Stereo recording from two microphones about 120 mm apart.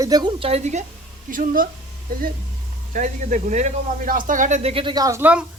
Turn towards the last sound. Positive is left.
turn(degrees=-10)  # may be behind; listen again after turning